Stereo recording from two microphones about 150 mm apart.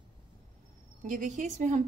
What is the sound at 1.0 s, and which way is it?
Speech, 60° right (ahead or behind).